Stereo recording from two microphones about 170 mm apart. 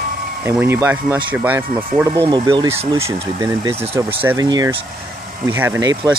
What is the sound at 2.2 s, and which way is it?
Speech, 25° right (ahead or behind).